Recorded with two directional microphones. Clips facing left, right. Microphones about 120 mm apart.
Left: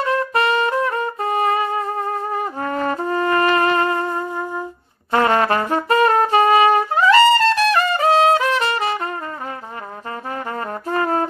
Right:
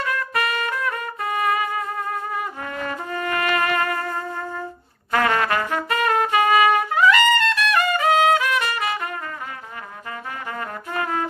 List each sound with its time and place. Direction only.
0.0 s trumpet: 30° left (ahead or behind)
5.1 s trumpet: 30° left (ahead or behind)
10.9 s brass instrument: 40° left (ahead or behind)